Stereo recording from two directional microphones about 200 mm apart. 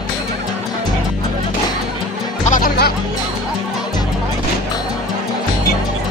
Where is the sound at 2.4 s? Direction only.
40° left (ahead or behind).